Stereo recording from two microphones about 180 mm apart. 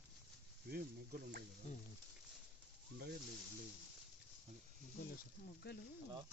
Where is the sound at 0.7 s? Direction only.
55° right (ahead or behind).